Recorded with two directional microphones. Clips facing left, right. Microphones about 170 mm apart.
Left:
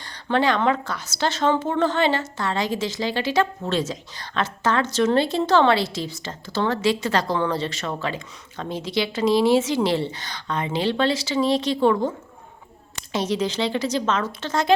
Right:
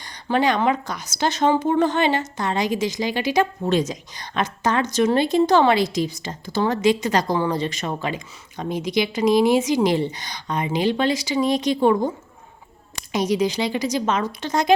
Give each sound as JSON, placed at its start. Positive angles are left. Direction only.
{"t": 0.0, "sound": "speech", "side_deg": -15}
{"t": 13.1, "sound": "speech", "side_deg": -15}